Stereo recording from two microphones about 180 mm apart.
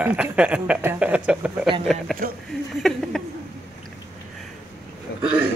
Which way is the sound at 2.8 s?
Centre (ahead or behind).